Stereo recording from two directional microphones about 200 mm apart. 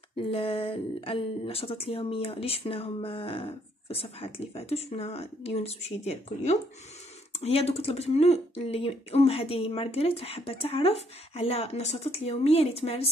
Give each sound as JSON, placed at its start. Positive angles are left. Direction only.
{"t": 0.1, "sound": "speech", "side_deg": 30}